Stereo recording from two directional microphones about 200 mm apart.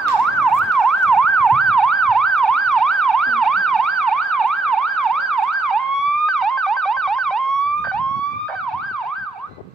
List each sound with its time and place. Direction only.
0.4 s emergency vehicle: centre (ahead or behind)